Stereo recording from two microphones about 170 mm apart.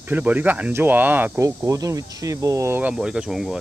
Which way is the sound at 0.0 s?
10° right (ahead or behind).